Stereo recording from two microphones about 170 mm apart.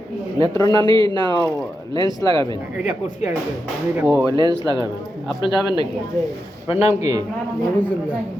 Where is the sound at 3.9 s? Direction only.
10° right (ahead or behind).